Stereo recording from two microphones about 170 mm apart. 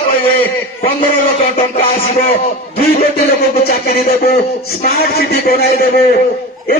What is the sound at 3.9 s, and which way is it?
A man's voice, 60° left (ahead or behind).